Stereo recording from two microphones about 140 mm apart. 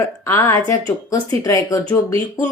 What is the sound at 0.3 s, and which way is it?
A woman's voice, 20° left (ahead or behind).